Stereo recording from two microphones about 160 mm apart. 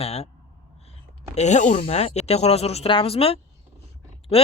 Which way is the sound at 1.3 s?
45° left (ahead or behind).